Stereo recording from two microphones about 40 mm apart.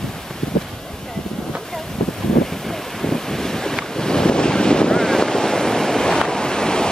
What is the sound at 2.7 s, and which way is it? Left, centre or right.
Wind noise, centre.